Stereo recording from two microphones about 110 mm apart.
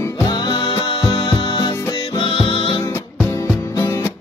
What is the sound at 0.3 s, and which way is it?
Music, 40° left (ahead or behind).